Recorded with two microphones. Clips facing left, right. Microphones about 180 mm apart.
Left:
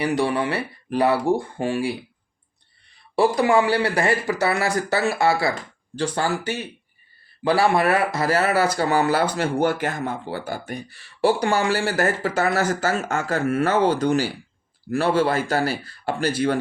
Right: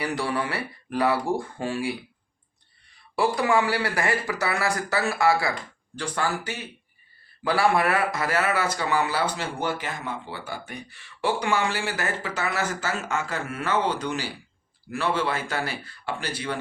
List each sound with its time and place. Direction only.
0.2 s speech: 25° left (ahead or behind)
3.2 s speech: 30° left (ahead or behind); by 16.6 s 45° left (ahead or behind)